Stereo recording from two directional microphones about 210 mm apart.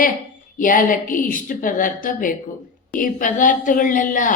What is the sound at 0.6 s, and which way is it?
Speech, 40° left (ahead or behind).